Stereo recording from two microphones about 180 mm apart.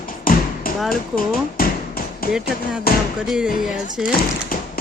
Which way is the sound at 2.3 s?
5° right (ahead or behind).